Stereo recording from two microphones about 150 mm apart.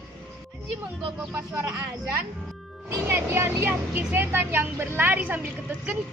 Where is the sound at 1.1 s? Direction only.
10° right (ahead or behind).